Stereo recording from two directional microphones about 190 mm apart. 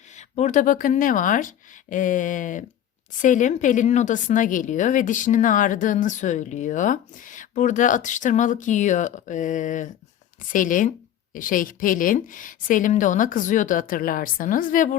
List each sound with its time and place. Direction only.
0.2 s a woman's voice: 35° left (ahead or behind)